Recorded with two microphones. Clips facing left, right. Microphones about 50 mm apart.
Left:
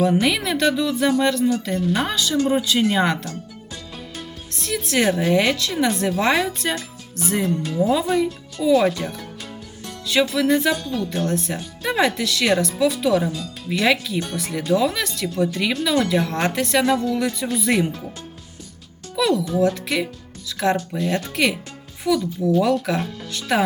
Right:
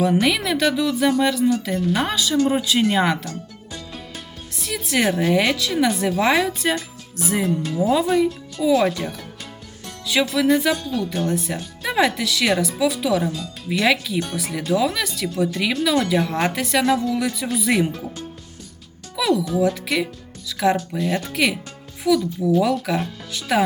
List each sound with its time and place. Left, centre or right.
0.0 s speech: centre
4.5 s speech: centre
19.1 s speech: centre